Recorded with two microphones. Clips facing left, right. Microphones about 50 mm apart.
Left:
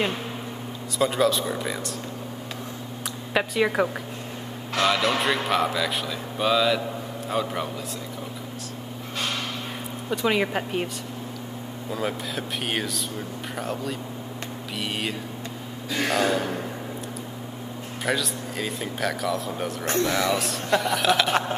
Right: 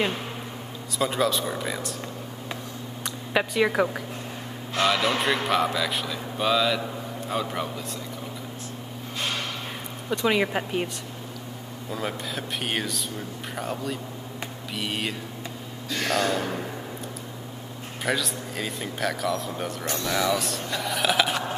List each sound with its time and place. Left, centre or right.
0.9 s speech: centre
3.3 s speech: centre
10.0 s speech: centre
11.9 s speech: centre
15.9 s a sound: centre
18.0 s speech: centre
19.8 s speech: left
20.3 s speech: centre